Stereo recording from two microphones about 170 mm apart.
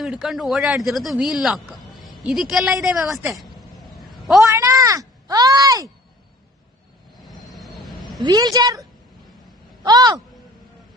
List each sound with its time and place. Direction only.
0.0 s speech: centre (ahead or behind)
4.0 s a sound: centre (ahead or behind)
4.4 s a sound: 20° right (ahead or behind)
7.3 s vehicle: centre (ahead or behind)
8.2 s a woman's voice: 20° right (ahead or behind)
9.8 s a woman's voice: 25° right (ahead or behind)